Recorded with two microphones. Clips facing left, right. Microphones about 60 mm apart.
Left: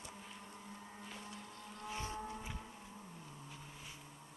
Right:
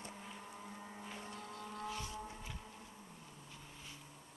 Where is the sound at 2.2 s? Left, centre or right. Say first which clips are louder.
Left 3 dB; centre.